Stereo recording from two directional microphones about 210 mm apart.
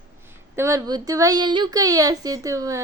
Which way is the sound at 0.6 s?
15° right (ahead or behind).